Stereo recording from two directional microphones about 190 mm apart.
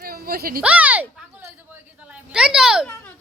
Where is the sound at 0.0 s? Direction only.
55° right (ahead or behind).